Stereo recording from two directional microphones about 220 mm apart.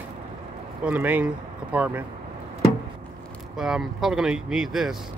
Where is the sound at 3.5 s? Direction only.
Centre (ahead or behind).